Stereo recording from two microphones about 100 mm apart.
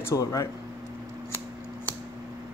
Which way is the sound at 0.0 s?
35° left (ahead or behind).